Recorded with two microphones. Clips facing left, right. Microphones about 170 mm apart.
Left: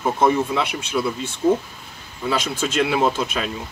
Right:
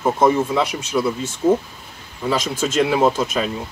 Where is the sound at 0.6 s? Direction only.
40° right (ahead or behind).